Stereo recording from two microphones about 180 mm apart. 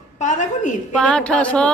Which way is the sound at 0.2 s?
40° left (ahead or behind).